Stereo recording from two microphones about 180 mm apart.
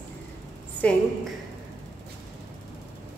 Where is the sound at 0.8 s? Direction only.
5° left (ahead or behind).